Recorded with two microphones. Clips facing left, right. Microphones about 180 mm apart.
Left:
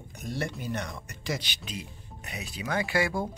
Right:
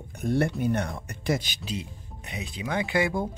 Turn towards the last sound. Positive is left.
turn(degrees=-20)  # may be behind; listen again after turning